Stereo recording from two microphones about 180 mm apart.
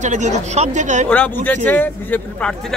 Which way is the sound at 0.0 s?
40° right (ahead or behind).